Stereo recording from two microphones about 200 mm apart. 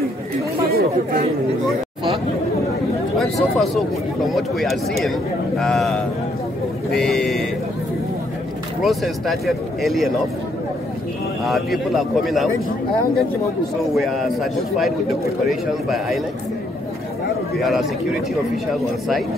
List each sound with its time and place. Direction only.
0.7 s chatter: 50° right (ahead or behind)
3.2 s speech: centre (ahead or behind)
8.8 s speech: centre (ahead or behind)
11.4 s speech: centre (ahead or behind)
13.9 s speech: centre (ahead or behind)
17.6 s speech: centre (ahead or behind)